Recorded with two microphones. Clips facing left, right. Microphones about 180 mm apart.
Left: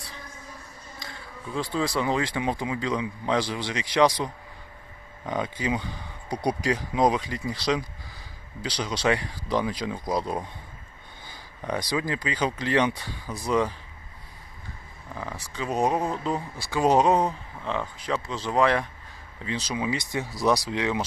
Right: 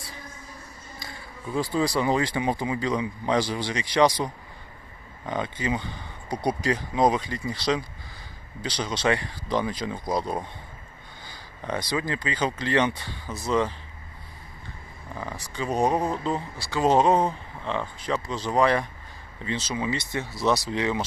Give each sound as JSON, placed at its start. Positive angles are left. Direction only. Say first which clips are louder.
{"t": 1.5, "sound": "speech", "louder": "right 2 dB", "side_deg": -5}
{"t": 5.2, "sound": "speech", "louder": "even", "side_deg": 5}
{"t": 7.0, "sound": "speech", "louder": "right 1 dB", "side_deg": -5}
{"t": 11.8, "sound": "speech", "louder": "even", "side_deg": 10}
{"t": 15.1, "sound": "speech", "louder": "right 1 dB", "side_deg": 0}
{"t": 16.6, "sound": "speech", "louder": "left 1 dB", "side_deg": 15}
{"t": 16.9, "sound": "speech", "louder": "right 1 dB", "side_deg": 0}
{"t": 20.2, "sound": "speech", "louder": "left 1 dB", "side_deg": 0}